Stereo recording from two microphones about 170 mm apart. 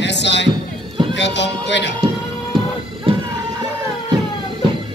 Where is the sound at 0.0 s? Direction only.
90° left.